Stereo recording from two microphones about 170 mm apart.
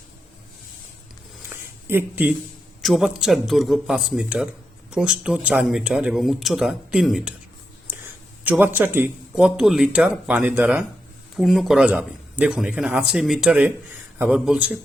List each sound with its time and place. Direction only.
1.9 s speech: 10° right (ahead or behind)
7.9 s a sound: 10° right (ahead or behind)
9.4 s speech: centre (ahead or behind)